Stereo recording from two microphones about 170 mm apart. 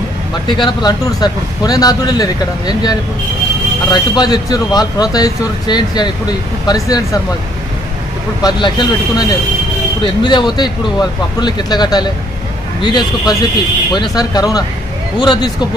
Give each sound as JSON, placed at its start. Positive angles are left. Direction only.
{"t": 0.5, "sound": "speech", "side_deg": 25}
{"t": 8.4, "sound": "speech", "side_deg": 25}